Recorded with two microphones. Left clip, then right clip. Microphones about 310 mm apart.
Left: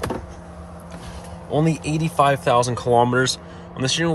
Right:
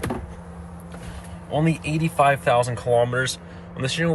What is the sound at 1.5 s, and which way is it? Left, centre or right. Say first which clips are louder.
Speech: left 2 dB; centre.